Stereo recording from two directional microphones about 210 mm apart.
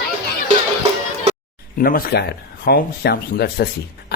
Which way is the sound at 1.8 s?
45° left (ahead or behind).